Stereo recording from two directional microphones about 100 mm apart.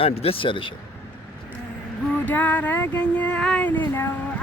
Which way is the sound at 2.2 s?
15° left (ahead or behind).